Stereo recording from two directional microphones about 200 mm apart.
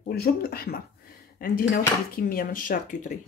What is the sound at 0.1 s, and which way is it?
A woman's voice, 50° left (ahead or behind).